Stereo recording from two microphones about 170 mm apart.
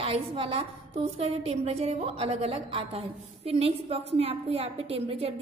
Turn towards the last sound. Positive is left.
turn(degrees=-35)  # may be behind; listen again after turning